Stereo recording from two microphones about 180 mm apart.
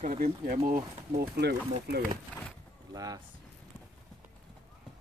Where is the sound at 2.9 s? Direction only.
20° right (ahead or behind).